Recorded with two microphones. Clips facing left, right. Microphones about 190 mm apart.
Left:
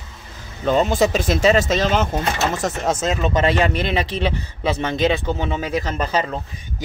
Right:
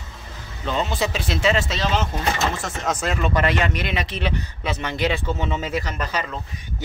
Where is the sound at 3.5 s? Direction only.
30° left (ahead or behind).